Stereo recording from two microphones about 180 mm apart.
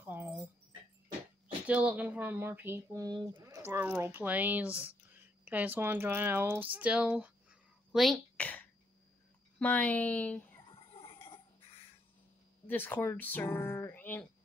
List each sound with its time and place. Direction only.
0.0 s keys jangling: 10° right (ahead or behind)
1.7 s speech: 5° right (ahead or behind); by 3.5 s 25° right (ahead or behind)
3.6 s speech: 10° right (ahead or behind)
7.9 s a sound: centre (ahead or behind)
9.6 s speech: 10° left (ahead or behind)
10.7 s a sound: 30° left (ahead or behind)
12.6 s speech: 10° left (ahead or behind)